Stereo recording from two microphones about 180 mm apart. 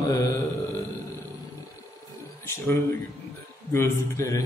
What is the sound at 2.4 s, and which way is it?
A man's voice, 15° left (ahead or behind).